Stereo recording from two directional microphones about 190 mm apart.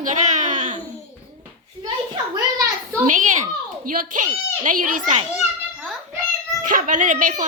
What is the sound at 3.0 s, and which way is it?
A woman's voice, 40° right (ahead or behind).